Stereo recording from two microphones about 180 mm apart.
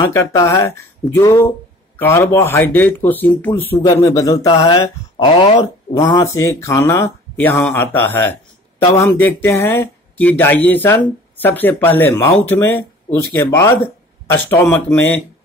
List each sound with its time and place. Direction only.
0.1 s a man's voice: 15° left (ahead or behind)